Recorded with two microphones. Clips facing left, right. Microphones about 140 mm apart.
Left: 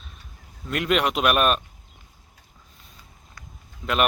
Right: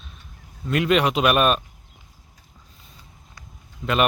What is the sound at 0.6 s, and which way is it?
Speech, centre (ahead or behind).